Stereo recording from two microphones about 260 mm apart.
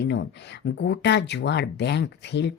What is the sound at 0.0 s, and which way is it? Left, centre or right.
Speech, left.